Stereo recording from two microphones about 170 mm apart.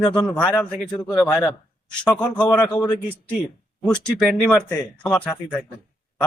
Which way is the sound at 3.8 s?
5° left (ahead or behind).